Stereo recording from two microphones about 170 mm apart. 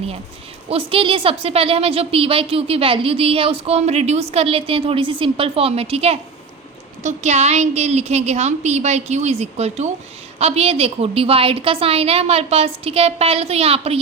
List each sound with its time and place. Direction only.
0.7 s a woman's voice: 35° right (ahead or behind)